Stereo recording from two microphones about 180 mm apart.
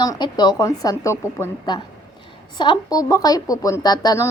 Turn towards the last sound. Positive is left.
turn(degrees=20)  # may be behind; listen again after turning